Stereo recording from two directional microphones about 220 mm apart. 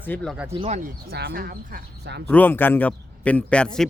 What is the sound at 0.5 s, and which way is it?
Speech, 30° right (ahead or behind).